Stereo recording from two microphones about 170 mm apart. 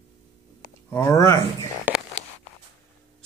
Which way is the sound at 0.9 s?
20° left (ahead or behind).